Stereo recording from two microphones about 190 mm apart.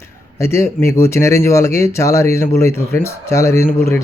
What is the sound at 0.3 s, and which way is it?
Speech, 15° left (ahead or behind).